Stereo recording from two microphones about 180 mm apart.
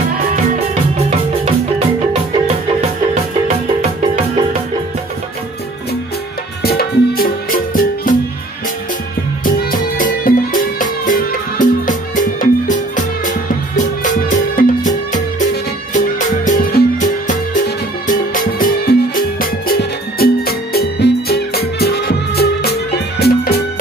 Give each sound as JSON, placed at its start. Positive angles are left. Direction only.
{"t": 0.9, "sound": "music", "side_deg": -35}
{"t": 3.4, "sound": "music", "side_deg": -40}
{"t": 6.6, "sound": "music", "side_deg": 60}
{"t": 9.4, "sound": "music", "side_deg": 50}